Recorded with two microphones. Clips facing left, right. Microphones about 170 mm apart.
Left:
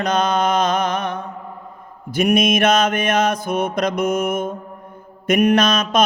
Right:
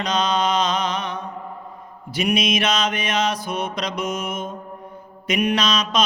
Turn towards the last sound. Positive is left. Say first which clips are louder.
# left 5 dB
turn(degrees=50)  # may be behind; listen again after turning